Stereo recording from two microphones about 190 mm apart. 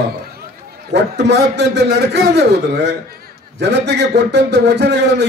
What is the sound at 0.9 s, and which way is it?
A man's voice, 60° right (ahead or behind).